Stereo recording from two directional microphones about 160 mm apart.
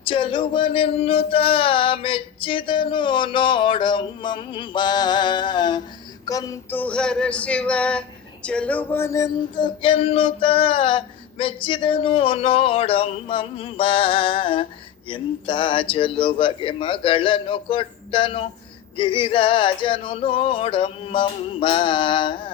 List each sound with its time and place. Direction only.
0.0 s music: 35° left (ahead or behind)
6.2 s female singing: 20° left (ahead or behind); by 8.0 s 5° left (ahead or behind)
8.4 s music: 5° left (ahead or behind); by 22.5 s 30° left (ahead or behind)